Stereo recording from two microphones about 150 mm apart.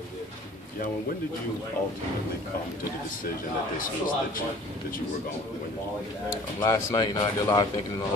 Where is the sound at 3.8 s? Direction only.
65° left (ahead or behind).